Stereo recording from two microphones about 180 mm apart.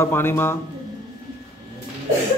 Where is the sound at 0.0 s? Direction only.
15° left (ahead or behind).